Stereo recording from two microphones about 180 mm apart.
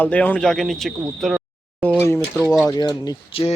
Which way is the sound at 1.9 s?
15° left (ahead or behind).